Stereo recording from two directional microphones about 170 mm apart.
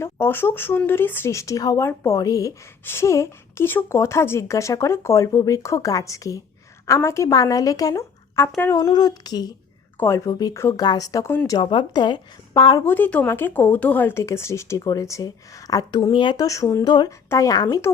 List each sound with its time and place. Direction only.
0.0 s a woman's voice: 15° left (ahead or behind)
11.5 s a woman's voice: 30° left (ahead or behind)